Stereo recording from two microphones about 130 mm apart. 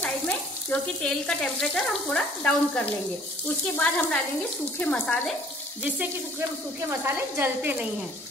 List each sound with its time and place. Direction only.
0.7 s frying: 5° left (ahead or behind)
7.0 s a woman's voice: 15° right (ahead or behind)